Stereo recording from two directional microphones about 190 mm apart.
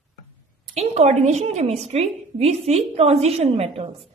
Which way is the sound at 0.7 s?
35° right (ahead or behind).